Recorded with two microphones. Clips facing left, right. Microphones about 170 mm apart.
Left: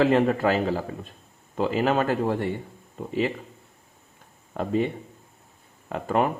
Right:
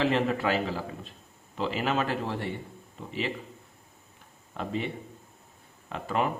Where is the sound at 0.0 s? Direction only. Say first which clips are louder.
Left 6 dB; 45° left (ahead or behind).